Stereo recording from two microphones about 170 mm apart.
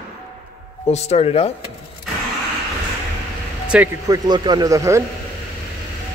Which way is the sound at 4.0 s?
25° right (ahead or behind).